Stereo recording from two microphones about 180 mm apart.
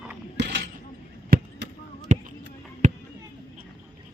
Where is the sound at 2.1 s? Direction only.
40° right (ahead or behind).